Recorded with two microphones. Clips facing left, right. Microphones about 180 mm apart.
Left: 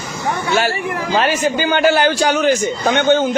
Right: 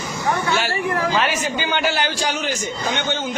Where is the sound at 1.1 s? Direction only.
45° left (ahead or behind).